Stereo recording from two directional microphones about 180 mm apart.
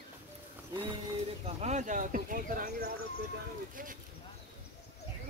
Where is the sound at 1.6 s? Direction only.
40° right (ahead or behind).